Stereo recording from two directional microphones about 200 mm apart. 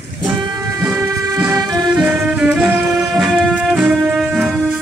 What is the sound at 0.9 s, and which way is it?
Music, 15° right (ahead or behind).